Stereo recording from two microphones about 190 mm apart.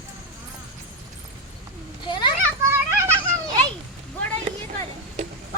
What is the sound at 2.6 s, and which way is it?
Children playing, 15° right (ahead or behind).